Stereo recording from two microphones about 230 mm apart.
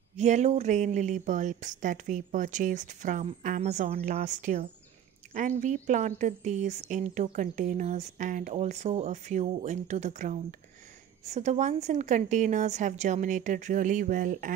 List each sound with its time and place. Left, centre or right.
0.2 s speech: right